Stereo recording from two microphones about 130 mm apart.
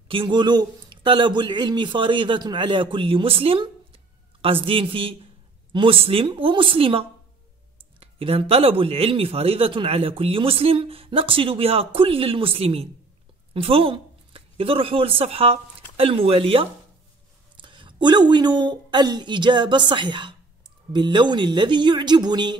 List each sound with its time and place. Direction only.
0.1 s a man's voice: 40° right (ahead or behind)